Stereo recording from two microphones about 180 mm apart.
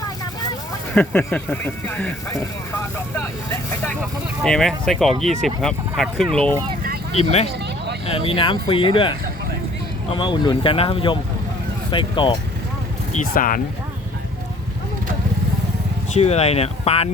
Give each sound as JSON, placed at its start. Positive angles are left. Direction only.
{"t": 0.9, "sound": "speech", "side_deg": 10}
{"t": 3.2, "sound": "speech", "side_deg": 15}
{"t": 4.0, "sound": "speech", "side_deg": 0}
{"t": 7.1, "sound": "speech", "side_deg": 35}
{"t": 13.1, "sound": "speech", "side_deg": 50}
{"t": 16.1, "sound": "speech", "side_deg": 35}